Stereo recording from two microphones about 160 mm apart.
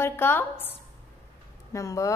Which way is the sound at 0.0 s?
15° left (ahead or behind).